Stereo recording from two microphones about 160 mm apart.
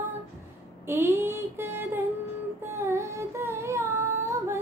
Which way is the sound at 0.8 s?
15° right (ahead or behind).